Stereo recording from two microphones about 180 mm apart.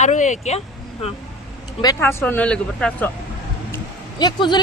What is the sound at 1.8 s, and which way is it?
Speech, 15° left (ahead or behind).